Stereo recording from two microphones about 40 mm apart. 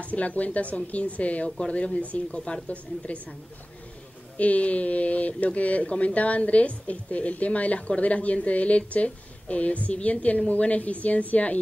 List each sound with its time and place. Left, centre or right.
0.0 s speech: left
4.4 s speech: left